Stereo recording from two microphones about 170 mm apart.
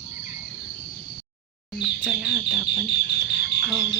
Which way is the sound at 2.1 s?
5° right (ahead or behind).